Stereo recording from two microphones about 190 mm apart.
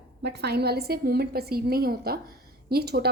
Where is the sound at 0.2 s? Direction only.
60° right (ahead or behind).